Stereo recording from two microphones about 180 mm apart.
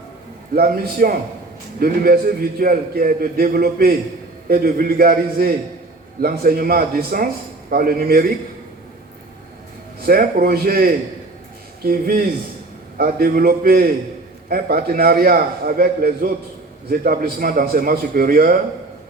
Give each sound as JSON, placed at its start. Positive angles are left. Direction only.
{"t": 0.5, "sound": "a man's voice", "side_deg": -55}
{"t": 2.6, "sound": "a man's voice", "side_deg": -55}
{"t": 10.1, "sound": "a man's voice", "side_deg": -55}